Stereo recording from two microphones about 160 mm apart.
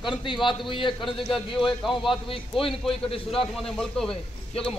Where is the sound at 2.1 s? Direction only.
35° left (ahead or behind).